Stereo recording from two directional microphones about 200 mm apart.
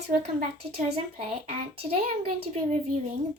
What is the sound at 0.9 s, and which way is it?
Speech, 30° right (ahead or behind).